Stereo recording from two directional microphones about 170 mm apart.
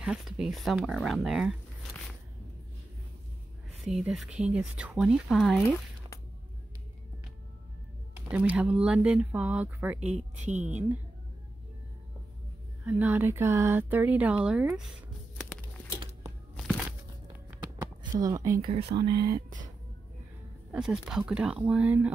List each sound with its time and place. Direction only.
0.0 s speech: 5° right (ahead or behind)
3.8 s speech: 5° right (ahead or behind)
8.3 s speech: 10° right (ahead or behind)
10.5 s a woman's voice: 45° right (ahead or behind)
12.8 s speech: 10° right (ahead or behind)
17.5 s a sound: 20° right (ahead or behind)
18.7 s speech: 40° right (ahead or behind)
19.0 s speech: 25° right (ahead or behind)
20.7 s speech: 5° right (ahead or behind)